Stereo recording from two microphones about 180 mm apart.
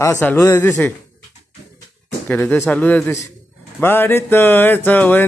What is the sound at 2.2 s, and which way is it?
Music, 10° left (ahead or behind).